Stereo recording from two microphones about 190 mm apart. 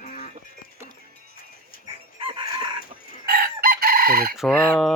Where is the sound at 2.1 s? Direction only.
25° right (ahead or behind).